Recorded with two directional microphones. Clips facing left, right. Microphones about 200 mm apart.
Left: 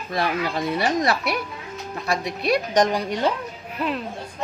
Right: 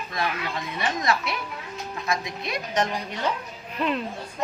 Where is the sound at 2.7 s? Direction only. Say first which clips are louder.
Left 3 dB; 35° left (ahead or behind).